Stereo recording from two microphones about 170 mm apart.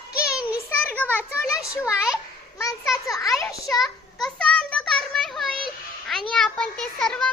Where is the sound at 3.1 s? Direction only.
20° left (ahead or behind).